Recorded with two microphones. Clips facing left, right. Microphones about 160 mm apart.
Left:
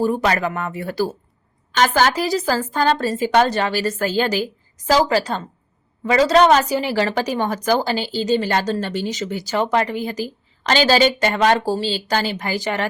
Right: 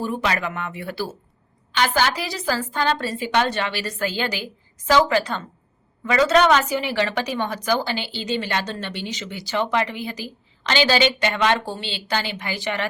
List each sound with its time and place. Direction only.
0.0 s a woman's voice: 40° left (ahead or behind)